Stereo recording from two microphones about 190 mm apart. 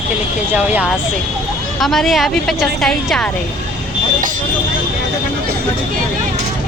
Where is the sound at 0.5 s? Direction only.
10° right (ahead or behind).